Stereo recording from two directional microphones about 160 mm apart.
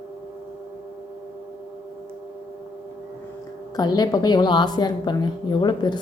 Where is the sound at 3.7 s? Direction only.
25° left (ahead or behind).